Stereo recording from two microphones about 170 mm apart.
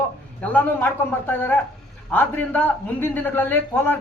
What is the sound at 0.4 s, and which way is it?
A man's voice, 10° left (ahead or behind).